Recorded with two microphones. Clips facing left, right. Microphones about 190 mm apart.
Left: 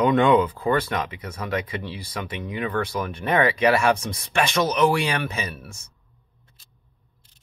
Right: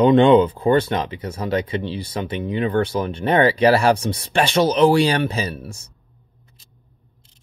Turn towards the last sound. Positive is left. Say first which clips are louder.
# right 6 dB
turn(degrees=-30)  # may be behind; listen again after turning